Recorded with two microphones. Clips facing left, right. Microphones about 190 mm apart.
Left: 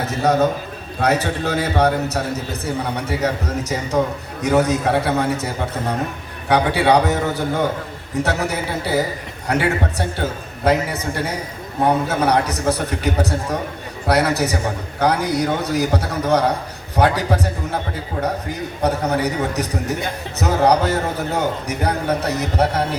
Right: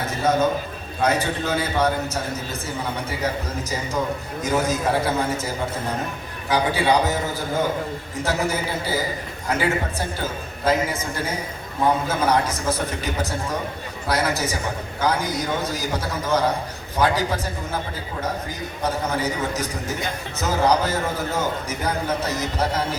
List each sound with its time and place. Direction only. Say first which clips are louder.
1.0 s a man's voice: left 3 dB; 65° left (ahead or behind)
6.5 s a man's voice: left 4 dB; 65° left (ahead or behind)
18.8 s a man's voice: left 5 dB; 65° left (ahead or behind)